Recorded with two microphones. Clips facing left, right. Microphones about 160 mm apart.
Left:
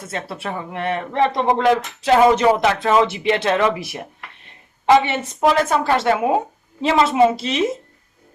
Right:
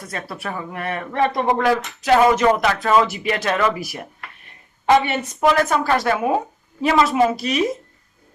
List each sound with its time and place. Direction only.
0.0 s speech: 25° left (ahead or behind)
5.0 s speech: 25° left (ahead or behind)